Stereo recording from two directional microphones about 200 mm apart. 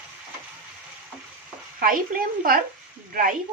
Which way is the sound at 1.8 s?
45° right (ahead or behind).